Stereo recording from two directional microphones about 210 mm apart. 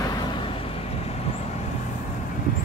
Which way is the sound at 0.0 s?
20° left (ahead or behind).